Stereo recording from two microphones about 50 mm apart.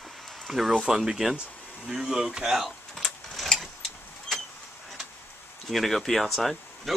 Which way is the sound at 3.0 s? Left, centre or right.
Centre.